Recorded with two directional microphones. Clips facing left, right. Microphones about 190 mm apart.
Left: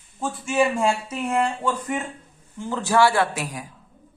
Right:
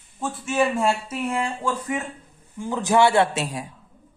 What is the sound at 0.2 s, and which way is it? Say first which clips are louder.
Speech: left 1 dB; centre (ahead or behind).